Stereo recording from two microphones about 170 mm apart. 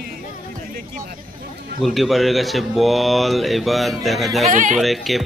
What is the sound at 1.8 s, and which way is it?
A man's voice, centre (ahead or behind).